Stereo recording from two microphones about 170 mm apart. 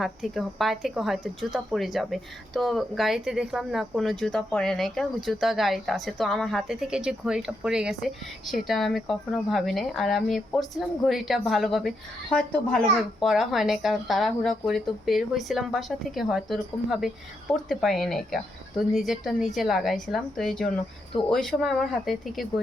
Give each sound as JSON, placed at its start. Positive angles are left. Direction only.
{"t": 0.0, "sound": "speech", "side_deg": 0}